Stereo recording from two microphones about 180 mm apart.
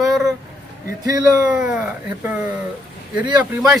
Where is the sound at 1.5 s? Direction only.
5° right (ahead or behind).